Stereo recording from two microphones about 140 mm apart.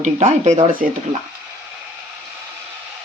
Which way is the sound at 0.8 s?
75° right (ahead or behind).